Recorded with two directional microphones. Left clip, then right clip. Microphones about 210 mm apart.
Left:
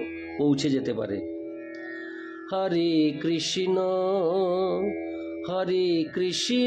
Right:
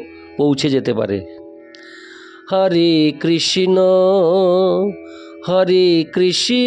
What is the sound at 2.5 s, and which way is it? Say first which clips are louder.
Music: right 11 dB; 50° right (ahead or behind).